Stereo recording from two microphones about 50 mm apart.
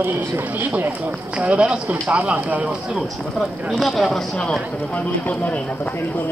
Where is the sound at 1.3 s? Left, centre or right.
Right.